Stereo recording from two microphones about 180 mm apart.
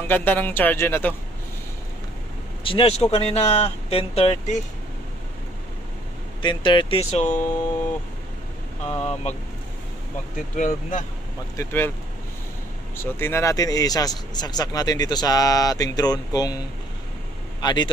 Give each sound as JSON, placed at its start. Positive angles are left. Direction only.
{"t": 0.1, "sound": "speech", "side_deg": 10}
{"t": 2.6, "sound": "speech", "side_deg": 30}
{"t": 6.4, "sound": "speech", "side_deg": 25}
{"t": 8.8, "sound": "speech", "side_deg": 35}
{"t": 10.5, "sound": "speech", "side_deg": 45}
{"t": 11.5, "sound": "speech", "side_deg": 10}
{"t": 12.9, "sound": "speech", "side_deg": 15}
{"t": 17.6, "sound": "speech", "side_deg": 25}